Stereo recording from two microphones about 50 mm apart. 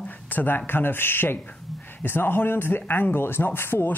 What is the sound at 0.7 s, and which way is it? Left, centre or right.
Speech, left.